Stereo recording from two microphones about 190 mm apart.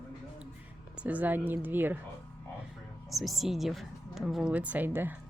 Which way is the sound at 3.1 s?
Centre (ahead or behind).